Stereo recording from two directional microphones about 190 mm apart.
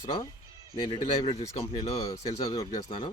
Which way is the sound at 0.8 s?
25° left (ahead or behind).